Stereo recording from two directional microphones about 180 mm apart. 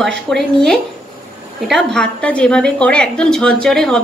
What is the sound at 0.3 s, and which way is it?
A woman's voice, 5° left (ahead or behind).